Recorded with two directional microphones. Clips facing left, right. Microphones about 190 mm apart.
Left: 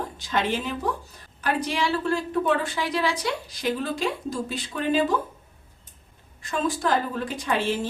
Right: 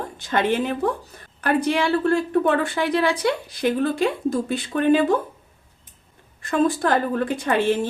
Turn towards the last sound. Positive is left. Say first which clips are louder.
# right 5 dB
turn(degrees=-55)  # may be behind; listen again after turning